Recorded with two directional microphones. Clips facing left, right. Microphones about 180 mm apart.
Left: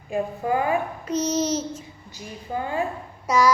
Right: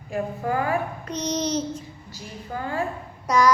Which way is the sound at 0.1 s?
20° left (ahead or behind).